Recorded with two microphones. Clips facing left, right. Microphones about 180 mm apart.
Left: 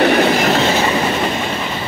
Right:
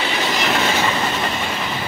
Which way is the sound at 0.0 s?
60° left (ahead or behind).